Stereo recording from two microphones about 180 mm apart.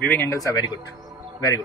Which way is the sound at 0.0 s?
10° left (ahead or behind).